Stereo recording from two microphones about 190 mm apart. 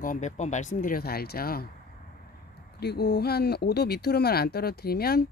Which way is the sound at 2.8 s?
60° left (ahead or behind).